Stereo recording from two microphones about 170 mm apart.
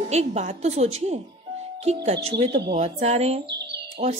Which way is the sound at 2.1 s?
30° right (ahead or behind).